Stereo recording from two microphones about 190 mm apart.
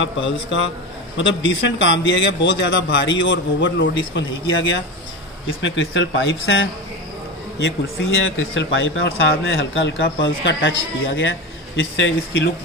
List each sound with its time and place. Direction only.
0.0 s a man's voice: 75° left (ahead or behind)
8.2 s a man's voice: 80° left